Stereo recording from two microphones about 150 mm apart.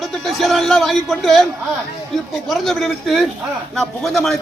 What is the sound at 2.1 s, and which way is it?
Speech, centre (ahead or behind).